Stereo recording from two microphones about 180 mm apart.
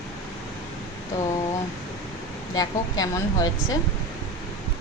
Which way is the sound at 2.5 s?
20° left (ahead or behind).